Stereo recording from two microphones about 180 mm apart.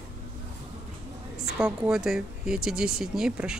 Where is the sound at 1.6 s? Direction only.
5° right (ahead or behind).